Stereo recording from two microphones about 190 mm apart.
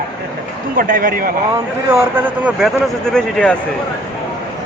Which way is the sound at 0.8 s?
45° right (ahead or behind).